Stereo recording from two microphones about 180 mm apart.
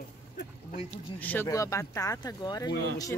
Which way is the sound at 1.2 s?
10° left (ahead or behind).